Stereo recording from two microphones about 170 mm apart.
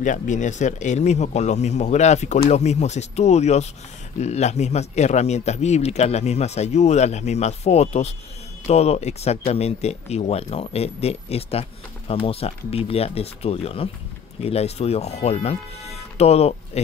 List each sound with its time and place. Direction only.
0.0 s speech: 45° left (ahead or behind)